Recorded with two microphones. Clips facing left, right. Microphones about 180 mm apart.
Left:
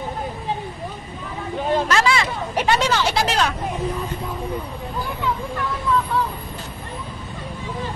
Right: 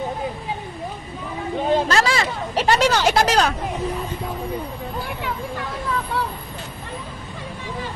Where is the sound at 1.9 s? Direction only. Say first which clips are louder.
Even; 35° right (ahead or behind).